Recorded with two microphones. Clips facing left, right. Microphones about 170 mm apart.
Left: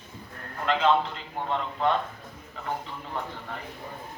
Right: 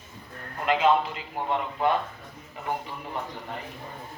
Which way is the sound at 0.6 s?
15° right (ahead or behind).